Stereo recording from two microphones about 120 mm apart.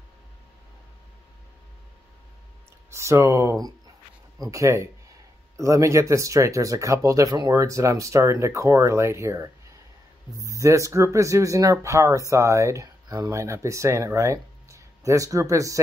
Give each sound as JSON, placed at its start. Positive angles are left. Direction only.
{"t": 2.9, "sound": "speech", "side_deg": -25}